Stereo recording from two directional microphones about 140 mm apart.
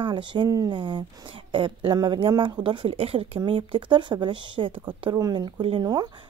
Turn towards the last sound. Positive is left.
turn(degrees=-30)  # may be behind; listen again after turning